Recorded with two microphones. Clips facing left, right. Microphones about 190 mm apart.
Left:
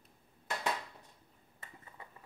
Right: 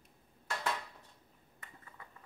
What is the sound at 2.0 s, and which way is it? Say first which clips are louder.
Clip-clop: left 3 dB; 25° left (ahead or behind).